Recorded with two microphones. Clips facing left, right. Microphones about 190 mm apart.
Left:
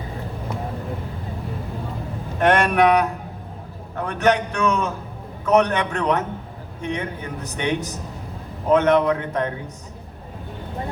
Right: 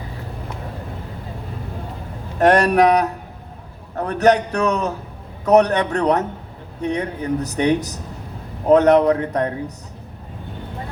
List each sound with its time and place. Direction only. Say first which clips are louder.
2.4 s a man's voice: right 3 dB; 40° right (ahead or behind)